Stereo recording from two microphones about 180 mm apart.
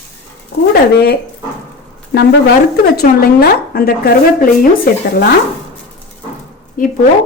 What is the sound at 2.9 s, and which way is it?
A woman's voice, 60° left (ahead or behind).